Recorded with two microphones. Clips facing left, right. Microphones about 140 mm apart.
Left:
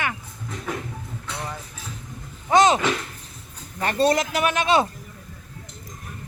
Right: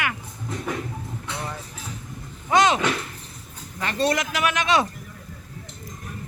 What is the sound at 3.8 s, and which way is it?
Speech, 40° left (ahead or behind).